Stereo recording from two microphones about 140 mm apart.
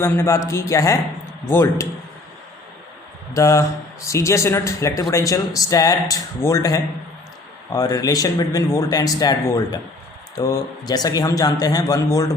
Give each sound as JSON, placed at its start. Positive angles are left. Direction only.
{"t": 0.0, "sound": "a man's voice", "side_deg": 20}
{"t": 3.3, "sound": "a man's voice", "side_deg": 20}